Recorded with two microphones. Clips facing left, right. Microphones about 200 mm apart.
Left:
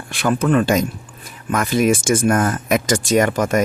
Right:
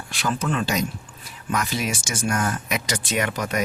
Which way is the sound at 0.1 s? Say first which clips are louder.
Left 9 dB; 55° left (ahead or behind).